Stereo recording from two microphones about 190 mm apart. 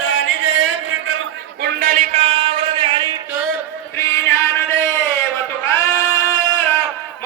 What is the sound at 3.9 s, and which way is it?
Music, 15° left (ahead or behind).